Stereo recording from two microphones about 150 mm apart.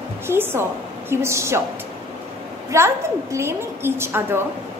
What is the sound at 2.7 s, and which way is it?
A woman's voice, 15° right (ahead or behind).